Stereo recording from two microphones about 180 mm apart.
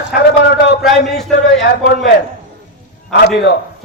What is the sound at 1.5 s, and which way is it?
Speech, 70° left (ahead or behind).